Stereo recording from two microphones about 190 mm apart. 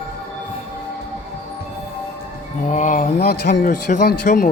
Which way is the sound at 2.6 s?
40° left (ahead or behind).